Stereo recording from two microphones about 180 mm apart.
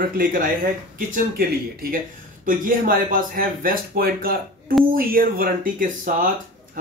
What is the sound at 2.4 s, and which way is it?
Speech, 50° right (ahead or behind).